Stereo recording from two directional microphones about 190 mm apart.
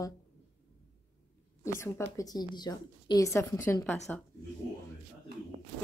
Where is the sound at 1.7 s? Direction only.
15° left (ahead or behind).